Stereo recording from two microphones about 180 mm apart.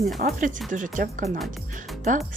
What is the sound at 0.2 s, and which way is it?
Speech, 50° right (ahead or behind).